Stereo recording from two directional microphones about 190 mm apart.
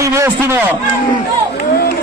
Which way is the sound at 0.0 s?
15° right (ahead or behind).